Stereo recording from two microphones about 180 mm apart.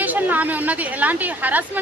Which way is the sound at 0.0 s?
10° right (ahead or behind).